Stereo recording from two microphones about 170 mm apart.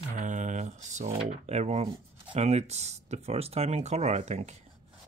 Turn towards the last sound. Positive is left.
turn(degrees=-40)  # may be behind; listen again after turning